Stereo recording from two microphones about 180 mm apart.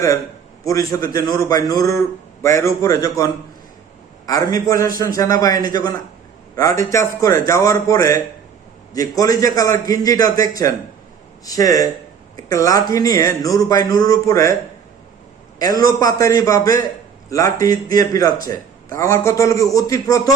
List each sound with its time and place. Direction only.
0.6 s a man's voice: 20° left (ahead or behind)
15.5 s a man's voice: 20° left (ahead or behind)